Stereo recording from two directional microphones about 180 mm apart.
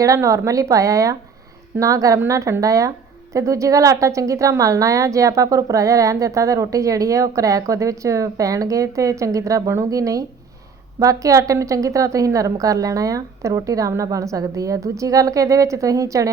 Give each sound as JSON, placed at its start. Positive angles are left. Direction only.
{"t": 0.0, "sound": "a woman's voice", "side_deg": -15}